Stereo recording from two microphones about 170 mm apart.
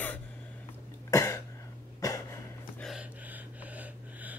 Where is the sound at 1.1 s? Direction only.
20° left (ahead or behind).